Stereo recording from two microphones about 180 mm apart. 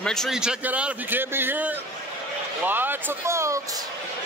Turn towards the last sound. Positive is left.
turn(degrees=-15)  # may be behind; listen again after turning